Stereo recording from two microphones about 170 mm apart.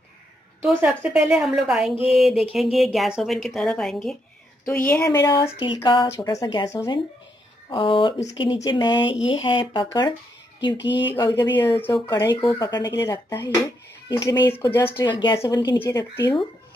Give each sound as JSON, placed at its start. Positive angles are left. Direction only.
{"t": 0.7, "sound": "speech", "side_deg": -5}
{"t": 5.1, "sound": "speech", "side_deg": 25}
{"t": 6.4, "sound": "speech", "side_deg": 20}
{"t": 7.7, "sound": "speech", "side_deg": 30}
{"t": 8.2, "sound": "speech", "side_deg": 40}
{"t": 8.5, "sound": "speech", "side_deg": 30}
{"t": 14.4, "sound": "speech", "side_deg": 15}
{"t": 15.0, "sound": "speech", "side_deg": 25}